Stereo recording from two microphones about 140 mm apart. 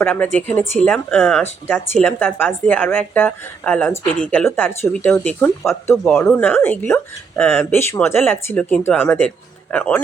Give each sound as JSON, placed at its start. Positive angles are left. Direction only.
{"t": 0.0, "sound": "speech", "side_deg": 10}